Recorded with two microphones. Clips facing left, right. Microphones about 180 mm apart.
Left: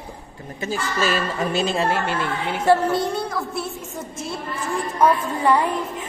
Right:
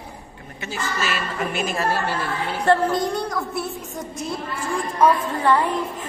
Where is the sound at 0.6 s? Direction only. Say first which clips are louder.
Left 4 dB; 35° left (ahead or behind).